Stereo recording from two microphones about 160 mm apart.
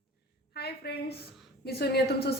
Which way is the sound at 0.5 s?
90° left.